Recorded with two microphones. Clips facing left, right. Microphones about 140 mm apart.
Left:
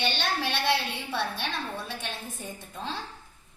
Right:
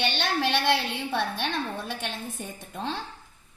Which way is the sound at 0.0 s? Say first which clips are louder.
Right 3 dB; 55° right (ahead or behind).